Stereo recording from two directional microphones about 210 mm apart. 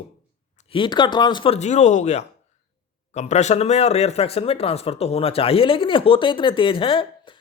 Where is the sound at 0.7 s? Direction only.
20° left (ahead or behind).